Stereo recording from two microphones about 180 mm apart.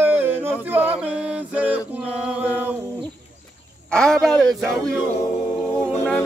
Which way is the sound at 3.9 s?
5° left (ahead or behind).